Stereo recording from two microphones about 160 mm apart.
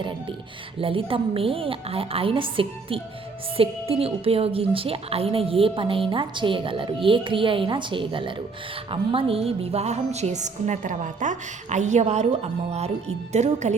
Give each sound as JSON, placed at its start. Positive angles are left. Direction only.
{"t": 0.0, "sound": "a woman's voice", "side_deg": -30}